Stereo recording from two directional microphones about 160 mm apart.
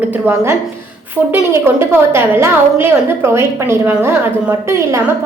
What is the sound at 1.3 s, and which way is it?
A woman's voice, 15° right (ahead or behind).